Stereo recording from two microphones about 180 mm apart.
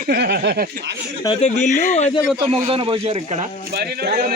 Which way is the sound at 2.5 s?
30° right (ahead or behind).